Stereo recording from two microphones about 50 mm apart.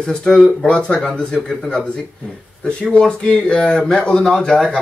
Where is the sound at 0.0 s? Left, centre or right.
Centre.